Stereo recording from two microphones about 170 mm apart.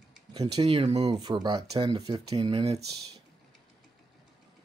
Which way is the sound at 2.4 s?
35° right (ahead or behind).